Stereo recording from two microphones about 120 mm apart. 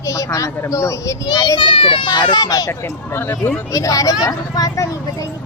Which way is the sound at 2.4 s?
30° left (ahead or behind).